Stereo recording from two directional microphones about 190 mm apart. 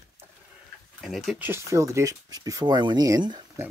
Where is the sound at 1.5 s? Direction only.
15° right (ahead or behind).